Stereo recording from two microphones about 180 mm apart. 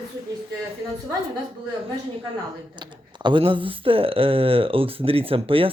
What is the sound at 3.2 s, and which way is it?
Speech, 30° right (ahead or behind).